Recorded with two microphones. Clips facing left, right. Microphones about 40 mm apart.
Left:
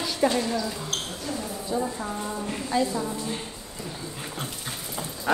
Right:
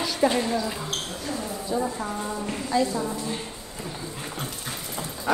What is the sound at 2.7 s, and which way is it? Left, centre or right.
Speech, left.